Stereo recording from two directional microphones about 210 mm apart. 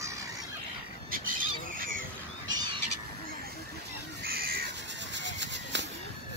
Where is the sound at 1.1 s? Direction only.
40° right (ahead or behind).